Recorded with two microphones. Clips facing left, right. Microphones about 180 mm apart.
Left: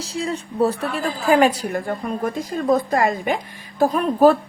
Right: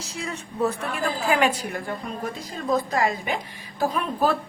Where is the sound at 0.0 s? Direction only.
30° left (ahead or behind).